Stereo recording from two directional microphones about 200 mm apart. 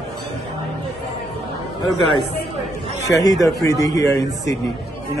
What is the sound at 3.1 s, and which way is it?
A man's voice, 15° left (ahead or behind).